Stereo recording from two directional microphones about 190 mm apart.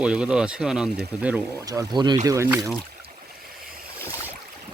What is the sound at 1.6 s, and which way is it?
Speech, 20° right (ahead or behind).